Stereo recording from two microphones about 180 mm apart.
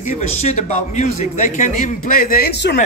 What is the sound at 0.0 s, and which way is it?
A man's voice, 40° left (ahead or behind).